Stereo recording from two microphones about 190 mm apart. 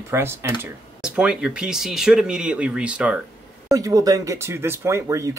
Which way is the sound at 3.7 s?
20° right (ahead or behind).